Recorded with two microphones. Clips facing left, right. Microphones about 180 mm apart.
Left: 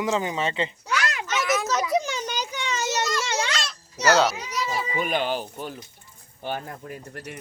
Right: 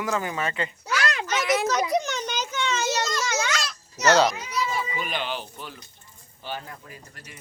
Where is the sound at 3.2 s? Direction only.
30° left (ahead or behind).